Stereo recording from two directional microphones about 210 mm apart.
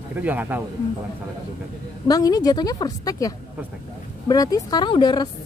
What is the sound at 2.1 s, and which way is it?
A woman's voice, 15° left (ahead or behind).